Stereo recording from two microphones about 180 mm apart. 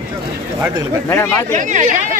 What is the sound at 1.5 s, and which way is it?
Speech, 45° right (ahead or behind).